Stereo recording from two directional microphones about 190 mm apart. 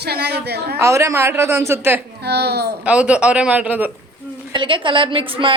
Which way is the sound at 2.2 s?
60° right (ahead or behind).